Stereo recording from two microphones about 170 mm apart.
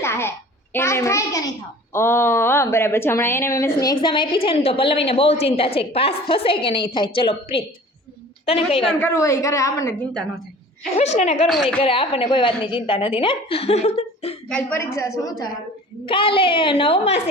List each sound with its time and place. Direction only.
0.0 s a sound: 15° left (ahead or behind)
1.9 s a woman's voice: 15° left (ahead or behind); by 8.9 s 35° left (ahead or behind)
9.0 s a woman's voice: 15° left (ahead or behind)
10.9 s a woman's voice: 40° left (ahead or behind)
11.4 s a woman's voice: centre (ahead or behind)
11.8 s a woman's voice: 35° left (ahead or behind)
14.5 s a woman's voice: 10° left (ahead or behind)
16.0 s a woman's voice: 30° left (ahead or behind)